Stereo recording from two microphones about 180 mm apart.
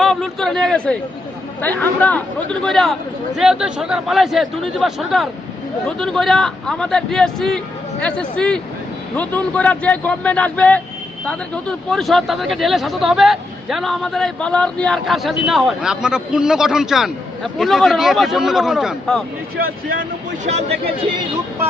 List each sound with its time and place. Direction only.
0.0 s speech: centre (ahead or behind)
11.9 s speech: centre (ahead or behind)